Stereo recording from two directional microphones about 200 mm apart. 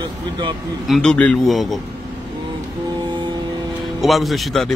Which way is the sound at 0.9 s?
5° left (ahead or behind).